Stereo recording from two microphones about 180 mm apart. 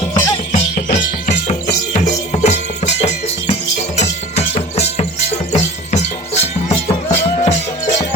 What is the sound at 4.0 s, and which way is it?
Music, 35° left (ahead or behind).